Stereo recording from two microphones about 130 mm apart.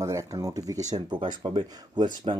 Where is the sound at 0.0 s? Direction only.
25° right (ahead or behind).